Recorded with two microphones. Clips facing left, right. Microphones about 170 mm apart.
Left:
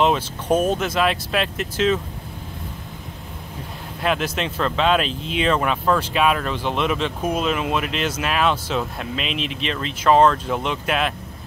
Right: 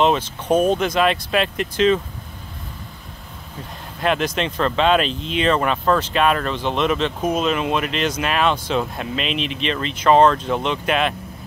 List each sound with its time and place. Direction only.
0.0 s speech: 10° left (ahead or behind)
4.0 s speech: 5° left (ahead or behind)